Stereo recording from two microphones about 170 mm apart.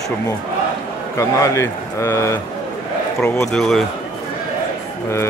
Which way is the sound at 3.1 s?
5° left (ahead or behind).